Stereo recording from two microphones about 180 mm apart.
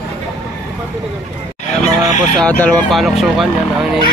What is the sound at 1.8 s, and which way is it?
Goose, 40° left (ahead or behind).